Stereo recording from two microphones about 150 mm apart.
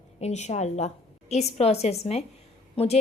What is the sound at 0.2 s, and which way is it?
A woman's voice, 45° left (ahead or behind).